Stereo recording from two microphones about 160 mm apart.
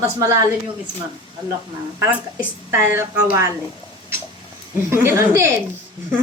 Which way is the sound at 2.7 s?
15° right (ahead or behind).